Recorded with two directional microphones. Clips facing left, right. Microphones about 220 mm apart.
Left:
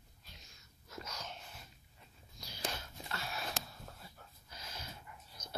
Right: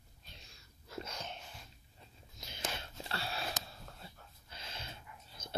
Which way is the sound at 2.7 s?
30° right (ahead or behind).